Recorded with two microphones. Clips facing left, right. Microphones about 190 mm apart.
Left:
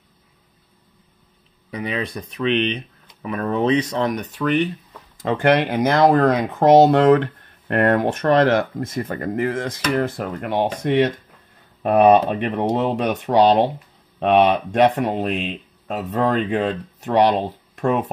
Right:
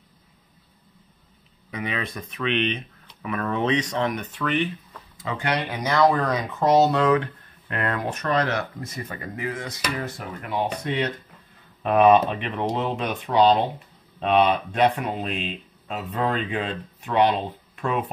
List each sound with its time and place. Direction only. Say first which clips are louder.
1.7 s speech: left 4 dB; 35° left (ahead or behind)
5.2 s speech: left 9 dB; 55° left (ahead or behind)
16.0 s speech: left 6 dB; 45° left (ahead or behind)